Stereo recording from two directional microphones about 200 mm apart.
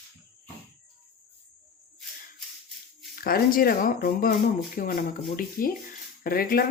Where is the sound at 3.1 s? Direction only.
45° left (ahead or behind).